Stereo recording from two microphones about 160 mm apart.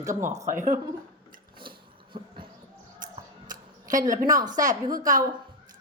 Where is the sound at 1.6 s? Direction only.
30° right (ahead or behind).